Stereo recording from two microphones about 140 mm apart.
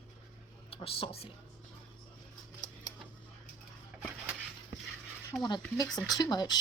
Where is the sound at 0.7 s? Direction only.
40° left (ahead or behind).